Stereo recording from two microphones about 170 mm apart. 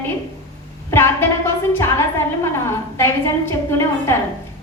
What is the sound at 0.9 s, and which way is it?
A woman's voice, 15° left (ahead or behind).